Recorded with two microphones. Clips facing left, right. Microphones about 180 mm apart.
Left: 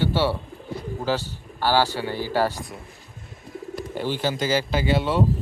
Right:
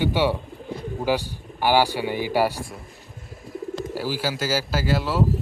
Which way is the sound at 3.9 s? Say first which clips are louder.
Left 3 dB; 5° right (ahead or behind).